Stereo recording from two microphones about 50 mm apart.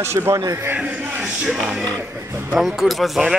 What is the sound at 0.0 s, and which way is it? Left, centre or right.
Speech, right.